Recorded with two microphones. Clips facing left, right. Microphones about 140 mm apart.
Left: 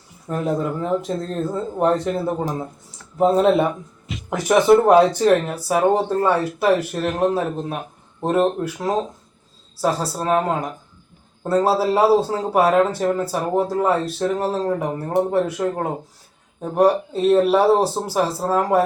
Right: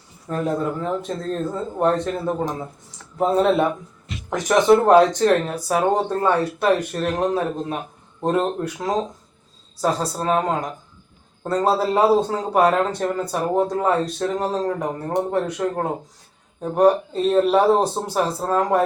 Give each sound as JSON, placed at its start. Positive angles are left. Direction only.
{"t": 0.3, "sound": "speech", "side_deg": 10}
{"t": 8.2, "sound": "speech", "side_deg": 5}